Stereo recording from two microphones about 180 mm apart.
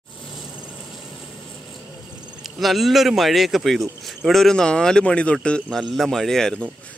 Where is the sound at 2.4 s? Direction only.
Centre (ahead or behind).